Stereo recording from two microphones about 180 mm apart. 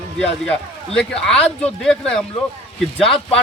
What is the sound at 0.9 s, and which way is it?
Speech, 5° left (ahead or behind).